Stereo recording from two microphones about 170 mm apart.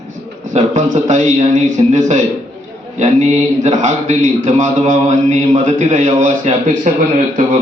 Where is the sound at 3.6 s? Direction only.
45° right (ahead or behind).